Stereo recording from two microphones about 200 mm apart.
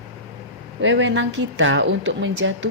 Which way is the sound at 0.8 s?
65° right (ahead or behind).